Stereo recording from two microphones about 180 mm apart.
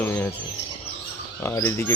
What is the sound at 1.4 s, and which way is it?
Speech, 15° left (ahead or behind).